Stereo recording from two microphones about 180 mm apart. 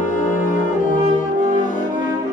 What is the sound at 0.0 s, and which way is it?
Music, 45° left (ahead or behind).